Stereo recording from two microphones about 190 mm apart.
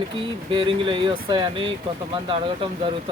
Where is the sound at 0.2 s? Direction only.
25° right (ahead or behind).